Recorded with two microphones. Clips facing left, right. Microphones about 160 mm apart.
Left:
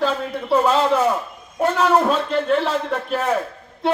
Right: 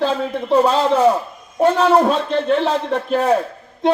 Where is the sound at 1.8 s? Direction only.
35° right (ahead or behind).